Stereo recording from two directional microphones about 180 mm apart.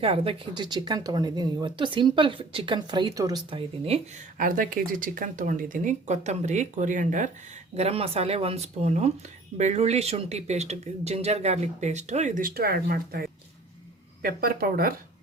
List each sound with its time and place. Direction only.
0.0 s speech: 30° right (ahead or behind)
4.4 s speech: 50° right (ahead or behind)
7.8 s speech: 35° right (ahead or behind); by 14.9 s 55° right (ahead or behind)